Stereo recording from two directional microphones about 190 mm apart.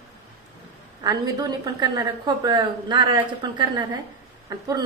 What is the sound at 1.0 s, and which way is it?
A woman's voice, 20° right (ahead or behind).